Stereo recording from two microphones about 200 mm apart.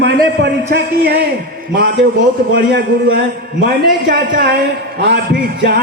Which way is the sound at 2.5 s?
50° right (ahead or behind).